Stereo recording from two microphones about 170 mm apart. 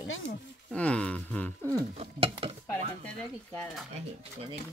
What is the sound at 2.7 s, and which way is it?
Speech, 10° left (ahead or behind).